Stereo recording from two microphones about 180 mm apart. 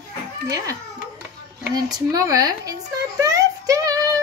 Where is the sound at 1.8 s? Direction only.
20° right (ahead or behind).